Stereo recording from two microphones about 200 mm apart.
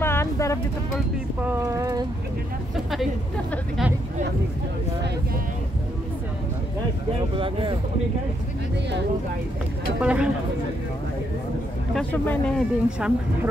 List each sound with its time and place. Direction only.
0.0 s vehicle: 10° left (ahead or behind)
1.4 s speech: 15° right (ahead or behind)
2.7 s speech: centre (ahead or behind)
7.3 s speech: 25° right (ahead or behind)
10.0 s speech: 5° right (ahead or behind)
11.9 s speech: 5° left (ahead or behind)